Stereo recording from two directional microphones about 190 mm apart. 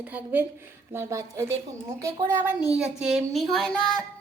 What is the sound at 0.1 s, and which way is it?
A woman's voice, 10° right (ahead or behind).